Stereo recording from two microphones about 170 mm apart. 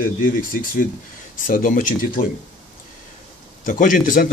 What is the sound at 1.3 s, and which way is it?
Speech, 55° left (ahead or behind).